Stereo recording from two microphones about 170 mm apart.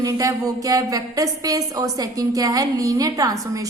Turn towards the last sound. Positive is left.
turn(degrees=-20)  # may be behind; listen again after turning